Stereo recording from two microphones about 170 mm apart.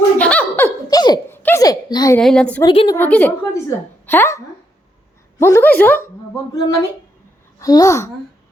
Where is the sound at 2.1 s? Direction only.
5° left (ahead or behind).